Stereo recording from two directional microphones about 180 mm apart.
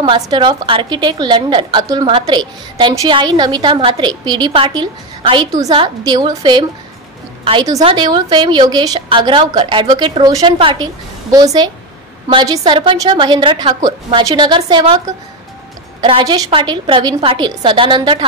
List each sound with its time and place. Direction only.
0.0 s a woman's voice: 25° right (ahead or behind)